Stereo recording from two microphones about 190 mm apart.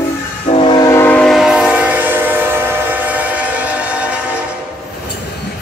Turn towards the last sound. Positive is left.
turn(degrees=-5)  # may be behind; listen again after turning